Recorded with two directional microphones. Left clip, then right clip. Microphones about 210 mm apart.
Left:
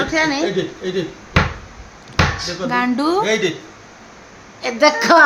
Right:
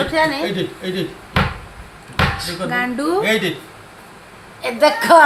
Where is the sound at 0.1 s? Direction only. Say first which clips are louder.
Right 1 dB; 15° left (ahead or behind).